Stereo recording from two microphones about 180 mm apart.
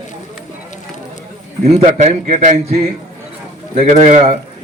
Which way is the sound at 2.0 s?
40° right (ahead or behind).